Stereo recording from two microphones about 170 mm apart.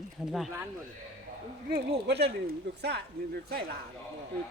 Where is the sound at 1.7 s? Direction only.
70° right (ahead or behind).